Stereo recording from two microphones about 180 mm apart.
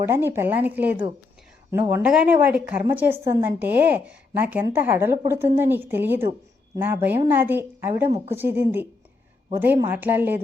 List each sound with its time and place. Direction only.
0.0 s a woman's voice: 15° right (ahead or behind)